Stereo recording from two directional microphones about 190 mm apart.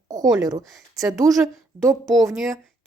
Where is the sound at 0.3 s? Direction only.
20° right (ahead or behind).